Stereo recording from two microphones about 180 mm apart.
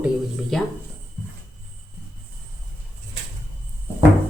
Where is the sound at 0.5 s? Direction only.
Centre (ahead or behind).